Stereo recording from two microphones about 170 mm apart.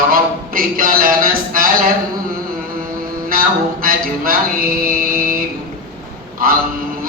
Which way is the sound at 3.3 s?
60° right (ahead or behind).